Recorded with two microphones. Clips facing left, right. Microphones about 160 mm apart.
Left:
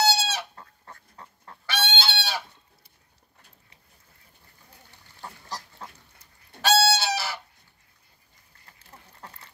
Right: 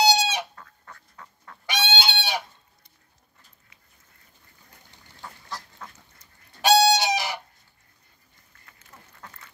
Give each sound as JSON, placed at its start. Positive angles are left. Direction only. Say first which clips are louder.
{"t": 0.0, "sound": "chicken", "louder": "right 3 dB", "side_deg": -15}
{"t": 0.6, "sound": "duck", "louder": "even", "side_deg": 30}
{"t": 1.7, "sound": "fowl", "louder": "right 2 dB", "side_deg": -15}
{"t": 5.2, "sound": "duck", "louder": "left 1 dB", "side_deg": 30}
{"t": 6.6, "sound": "chicken", "louder": "right 4 dB", "side_deg": -15}
{"t": 8.6, "sound": "duck", "louder": "left 1 dB", "side_deg": 35}